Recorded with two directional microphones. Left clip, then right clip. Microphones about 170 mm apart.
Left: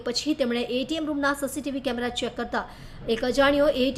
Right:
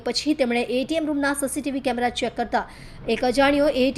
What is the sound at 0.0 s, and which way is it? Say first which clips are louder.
A woman's voice: right 3 dB; 15° right (ahead or behind).